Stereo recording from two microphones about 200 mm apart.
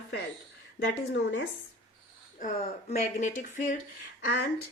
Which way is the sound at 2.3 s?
40° left (ahead or behind).